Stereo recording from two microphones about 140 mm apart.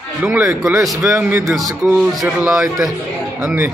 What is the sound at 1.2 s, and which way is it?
Speech, 15° right (ahead or behind).